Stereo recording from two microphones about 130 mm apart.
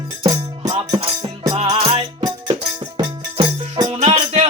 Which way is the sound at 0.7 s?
40° right (ahead or behind).